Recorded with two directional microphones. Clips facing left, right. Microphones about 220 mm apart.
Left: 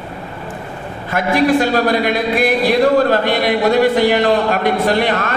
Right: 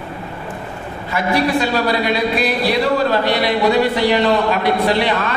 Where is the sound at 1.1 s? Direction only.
50° left (ahead or behind).